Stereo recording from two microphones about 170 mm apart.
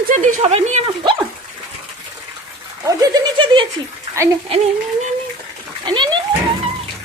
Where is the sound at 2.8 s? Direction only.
25° right (ahead or behind).